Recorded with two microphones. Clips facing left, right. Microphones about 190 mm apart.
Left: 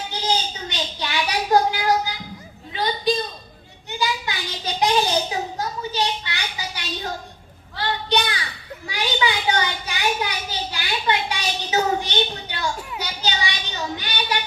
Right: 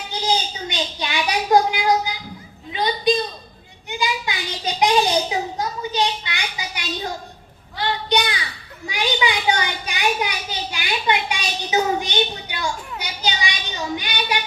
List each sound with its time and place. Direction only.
0.1 s a woman's voice: 15° right (ahead or behind)